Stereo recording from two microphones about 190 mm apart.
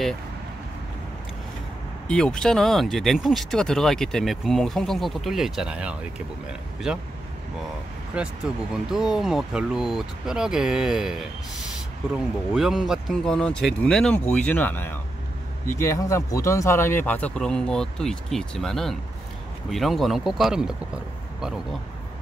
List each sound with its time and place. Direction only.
2.0 s speech: 5° left (ahead or behind)
8.2 s speech: 5° right (ahead or behind)
12.5 s speech: centre (ahead or behind)